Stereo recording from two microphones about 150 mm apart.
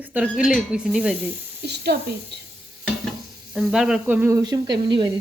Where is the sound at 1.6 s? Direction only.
90° right.